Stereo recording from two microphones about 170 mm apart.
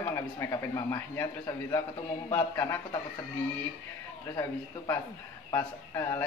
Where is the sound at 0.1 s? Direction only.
15° left (ahead or behind).